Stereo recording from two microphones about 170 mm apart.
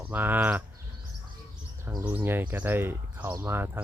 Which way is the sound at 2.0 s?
10° right (ahead or behind).